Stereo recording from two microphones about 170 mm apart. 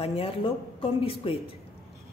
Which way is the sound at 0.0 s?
35° left (ahead or behind).